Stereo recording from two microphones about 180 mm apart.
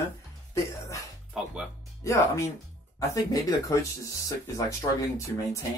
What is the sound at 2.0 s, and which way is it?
Speech, 15° left (ahead or behind).